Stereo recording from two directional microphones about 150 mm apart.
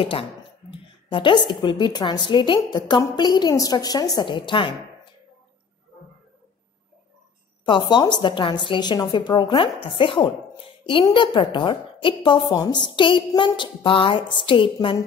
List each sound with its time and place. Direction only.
0.0 s a woman's voice: 40° left (ahead or behind)
7.6 s a woman's voice: 30° left (ahead or behind)